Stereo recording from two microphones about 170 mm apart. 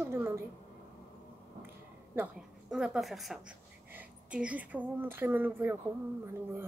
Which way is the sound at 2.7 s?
Centre (ahead or behind).